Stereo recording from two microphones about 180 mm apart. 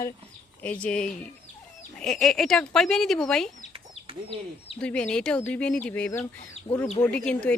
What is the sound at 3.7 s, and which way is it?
Chicken, 30° right (ahead or behind).